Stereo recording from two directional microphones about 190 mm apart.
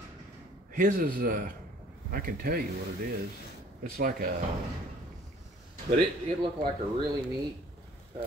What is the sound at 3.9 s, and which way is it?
Speech, 50° right (ahead or behind).